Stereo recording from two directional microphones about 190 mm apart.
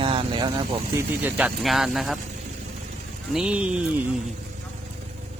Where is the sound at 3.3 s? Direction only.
5° right (ahead or behind).